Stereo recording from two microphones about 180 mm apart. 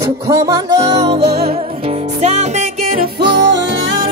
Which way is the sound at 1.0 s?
30° right (ahead or behind).